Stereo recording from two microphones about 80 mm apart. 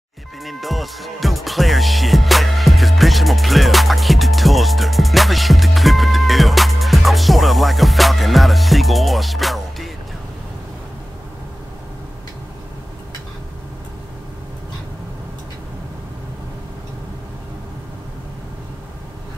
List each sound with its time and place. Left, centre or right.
0.4 s music: centre